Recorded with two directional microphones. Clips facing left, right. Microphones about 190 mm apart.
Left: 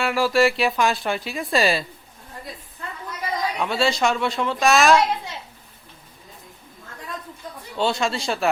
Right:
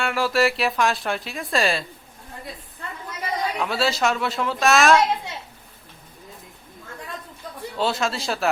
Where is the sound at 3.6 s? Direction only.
Centre (ahead or behind).